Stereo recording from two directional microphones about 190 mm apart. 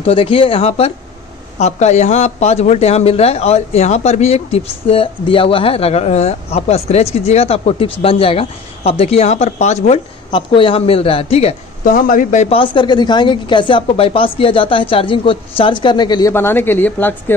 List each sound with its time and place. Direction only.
0.0 s speech: 30° left (ahead or behind); by 17.1 s 10° left (ahead or behind)